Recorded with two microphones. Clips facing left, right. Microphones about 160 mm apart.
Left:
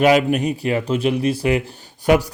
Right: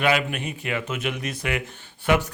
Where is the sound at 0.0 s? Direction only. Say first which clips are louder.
Left 8 dB; 40° left (ahead or behind).